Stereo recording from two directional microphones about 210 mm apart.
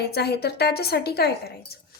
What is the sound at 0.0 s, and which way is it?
A woman's voice, 50° left (ahead or behind).